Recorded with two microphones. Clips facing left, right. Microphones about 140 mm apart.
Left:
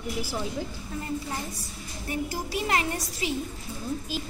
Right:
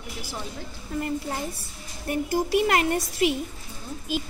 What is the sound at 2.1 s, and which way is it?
A woman's voice, 60° right (ahead or behind).